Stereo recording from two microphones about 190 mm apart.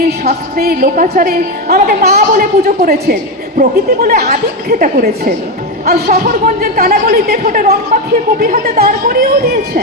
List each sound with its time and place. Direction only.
0.3 s a woman's voice: 50° right (ahead or behind)